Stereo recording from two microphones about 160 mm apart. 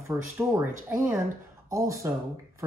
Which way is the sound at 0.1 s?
15° right (ahead or behind).